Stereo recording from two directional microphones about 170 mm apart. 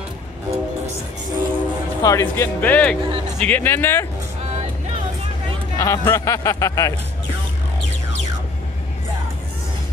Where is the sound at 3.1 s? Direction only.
40° right (ahead or behind).